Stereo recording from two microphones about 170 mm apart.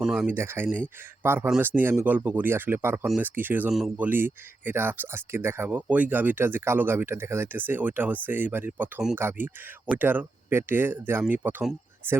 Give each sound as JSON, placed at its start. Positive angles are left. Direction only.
{"t": 0.0, "sound": "speech", "side_deg": -5}